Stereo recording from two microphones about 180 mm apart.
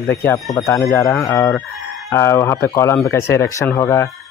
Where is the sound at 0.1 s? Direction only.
15° left (ahead or behind).